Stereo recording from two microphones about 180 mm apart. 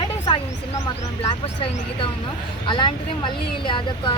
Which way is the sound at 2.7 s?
25° left (ahead or behind).